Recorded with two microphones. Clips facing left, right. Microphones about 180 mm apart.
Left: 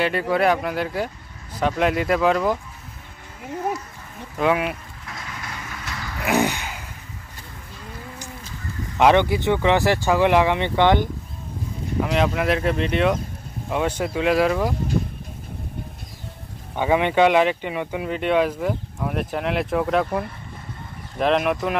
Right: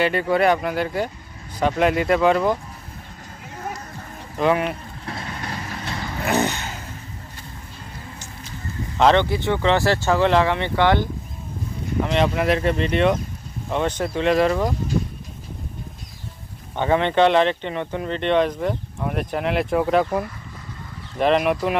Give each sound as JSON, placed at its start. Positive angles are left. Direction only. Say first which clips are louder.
{"t": 0.0, "sound": "speech", "louder": "right 1 dB", "side_deg": 0}
{"t": 4.4, "sound": "speech", "louder": "right 1 dB", "side_deg": 5}
{"t": 5.0, "sound": "vehicle", "louder": "right 5 dB", "side_deg": -35}
{"t": 6.2, "sound": "a sound", "louder": "left 1 dB", "side_deg": 10}
{"t": 8.9, "sound": "speech", "louder": "left 1 dB", "side_deg": 15}
{"t": 12.0, "sound": "speech", "louder": "right 1 dB", "side_deg": 5}
{"t": 16.7, "sound": "speech", "louder": "even", "side_deg": 10}